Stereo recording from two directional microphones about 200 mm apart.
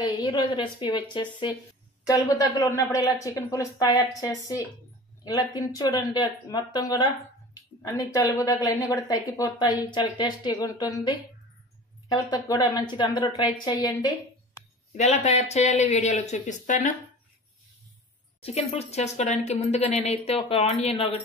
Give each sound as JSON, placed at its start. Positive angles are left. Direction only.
{"t": 0.0, "sound": "a woman's voice", "side_deg": 20}
{"t": 15.0, "sound": "speech", "side_deg": 35}
{"t": 18.7, "sound": "speech", "side_deg": 30}